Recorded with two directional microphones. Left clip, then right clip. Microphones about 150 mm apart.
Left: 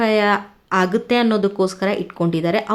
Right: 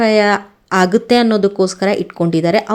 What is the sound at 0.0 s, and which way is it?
A woman's voice, 25° right (ahead or behind).